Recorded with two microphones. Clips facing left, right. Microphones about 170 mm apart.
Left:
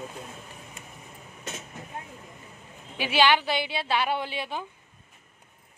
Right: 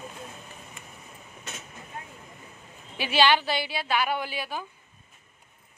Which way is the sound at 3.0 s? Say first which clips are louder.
Even; 15° left (ahead or behind).